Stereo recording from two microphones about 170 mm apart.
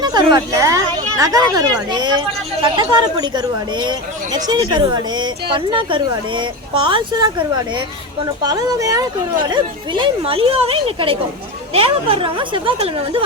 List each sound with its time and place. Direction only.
0.0 s a woman's voice: 25° right (ahead or behind)
8.4 s a woman's voice: 20° right (ahead or behind)